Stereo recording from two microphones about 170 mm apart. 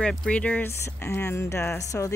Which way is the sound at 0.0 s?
5° left (ahead or behind).